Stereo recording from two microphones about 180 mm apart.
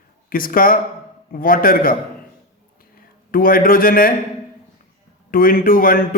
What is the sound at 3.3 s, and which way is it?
Speech, 50° left (ahead or behind).